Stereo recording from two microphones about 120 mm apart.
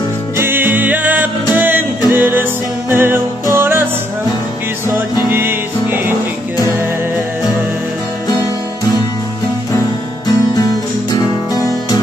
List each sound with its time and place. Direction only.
0.4 s music: 15° right (ahead or behind)
4.8 s music: 20° right (ahead or behind)
10.2 s music: 30° left (ahead or behind)